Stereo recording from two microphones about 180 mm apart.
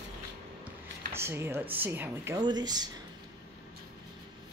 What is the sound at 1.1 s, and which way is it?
Speech, 15° right (ahead or behind).